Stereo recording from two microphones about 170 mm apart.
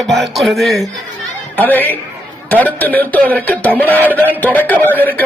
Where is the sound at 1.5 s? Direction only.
10° left (ahead or behind).